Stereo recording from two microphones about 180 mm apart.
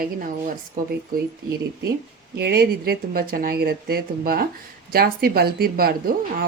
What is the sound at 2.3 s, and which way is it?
Speech, 65° right (ahead or behind).